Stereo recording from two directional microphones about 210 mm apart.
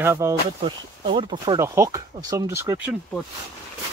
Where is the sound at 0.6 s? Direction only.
25° right (ahead or behind).